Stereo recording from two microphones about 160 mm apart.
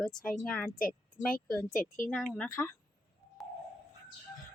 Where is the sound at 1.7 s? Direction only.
55° left (ahead or behind).